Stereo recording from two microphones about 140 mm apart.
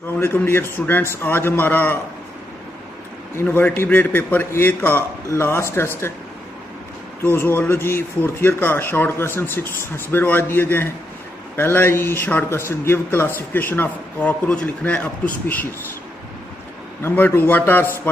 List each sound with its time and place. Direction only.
0.2 s a man's voice: 15° left (ahead or behind)
3.3 s a man's voice: 10° left (ahead or behind)
7.3 s a man's voice: 15° left (ahead or behind)
17.0 s a man's voice: 15° left (ahead or behind)